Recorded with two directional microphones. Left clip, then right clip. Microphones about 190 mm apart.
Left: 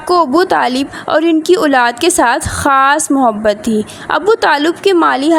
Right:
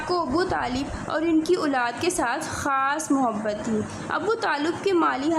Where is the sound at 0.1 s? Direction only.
45° left (ahead or behind).